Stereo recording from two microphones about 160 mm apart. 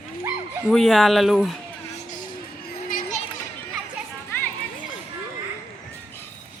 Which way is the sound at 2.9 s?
45° left (ahead or behind).